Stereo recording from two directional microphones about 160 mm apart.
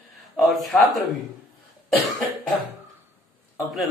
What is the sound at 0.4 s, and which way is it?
Speech, centre (ahead or behind).